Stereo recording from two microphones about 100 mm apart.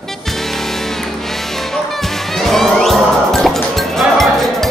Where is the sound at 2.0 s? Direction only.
5° left (ahead or behind).